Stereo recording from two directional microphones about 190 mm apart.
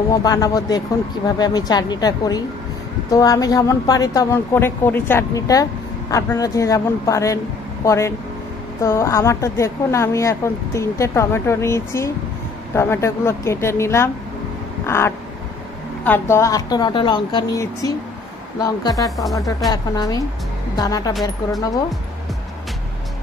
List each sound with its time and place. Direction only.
0.1 s a woman's voice: 20° left (ahead or behind)